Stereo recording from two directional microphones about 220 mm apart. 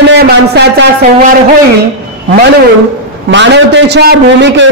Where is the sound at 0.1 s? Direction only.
50° right (ahead or behind).